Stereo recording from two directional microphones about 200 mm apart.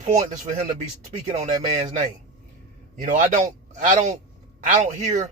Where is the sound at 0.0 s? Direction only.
35° right (ahead or behind).